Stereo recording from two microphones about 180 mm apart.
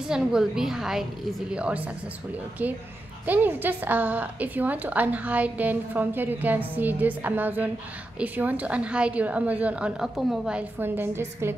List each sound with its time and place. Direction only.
0.1 s a woman's voice: 5° right (ahead or behind)